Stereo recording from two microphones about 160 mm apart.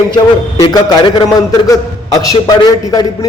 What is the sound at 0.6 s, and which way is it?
Speech, 25° left (ahead or behind).